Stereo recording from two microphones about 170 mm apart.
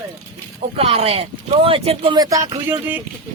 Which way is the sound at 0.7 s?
35° right (ahead or behind).